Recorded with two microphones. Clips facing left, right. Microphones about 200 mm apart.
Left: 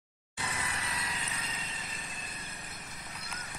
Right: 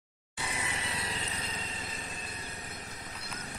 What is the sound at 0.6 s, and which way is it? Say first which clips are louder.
Vehicle: right 4 dB; 25° right (ahead or behind).